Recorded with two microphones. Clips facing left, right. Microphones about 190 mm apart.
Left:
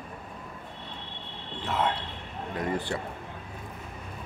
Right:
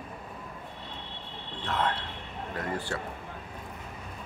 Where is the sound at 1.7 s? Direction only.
5° left (ahead or behind).